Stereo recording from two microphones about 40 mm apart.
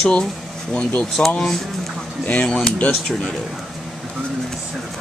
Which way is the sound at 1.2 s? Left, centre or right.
Left.